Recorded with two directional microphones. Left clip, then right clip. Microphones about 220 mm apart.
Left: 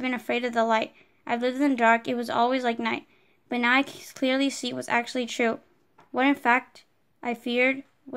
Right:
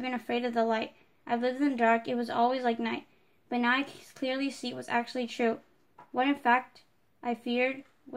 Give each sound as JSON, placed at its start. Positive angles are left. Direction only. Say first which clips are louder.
{"t": 0.0, "sound": "a woman's voice", "louder": "left 4 dB", "side_deg": 35}